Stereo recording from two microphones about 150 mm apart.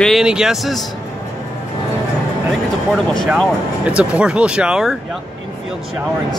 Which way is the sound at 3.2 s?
Centre (ahead or behind).